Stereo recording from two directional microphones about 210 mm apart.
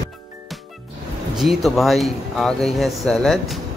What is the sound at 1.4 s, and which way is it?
Speech, centre (ahead or behind).